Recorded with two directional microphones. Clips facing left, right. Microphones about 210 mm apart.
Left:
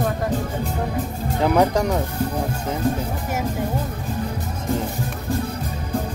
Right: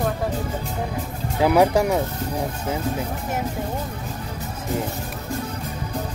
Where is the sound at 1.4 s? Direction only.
10° right (ahead or behind).